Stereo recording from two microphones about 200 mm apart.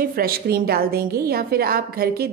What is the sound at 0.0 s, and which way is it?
A woman's voice, 50° right (ahead or behind).